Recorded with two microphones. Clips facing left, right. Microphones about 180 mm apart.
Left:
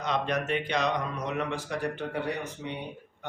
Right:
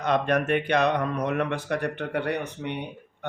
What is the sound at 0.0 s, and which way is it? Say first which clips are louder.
Speech: right 6 dB; 55° right (ahead or behind).